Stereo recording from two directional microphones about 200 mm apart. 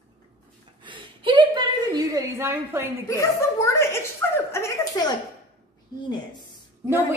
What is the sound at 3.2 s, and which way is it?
A child's voice, 15° left (ahead or behind).